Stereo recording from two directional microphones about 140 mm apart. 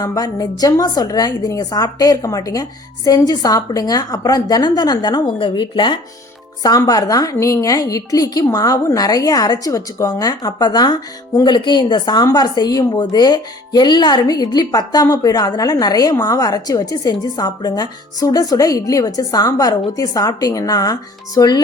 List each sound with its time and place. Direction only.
0.0 s a woman's voice: 25° left (ahead or behind)